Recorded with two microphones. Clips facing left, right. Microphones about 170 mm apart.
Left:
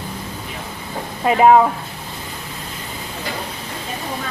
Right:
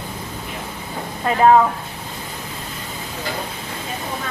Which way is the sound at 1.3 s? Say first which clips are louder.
Left 4 dB; 10° left (ahead or behind).